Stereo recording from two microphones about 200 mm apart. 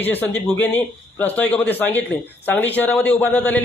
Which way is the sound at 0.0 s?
10° left (ahead or behind).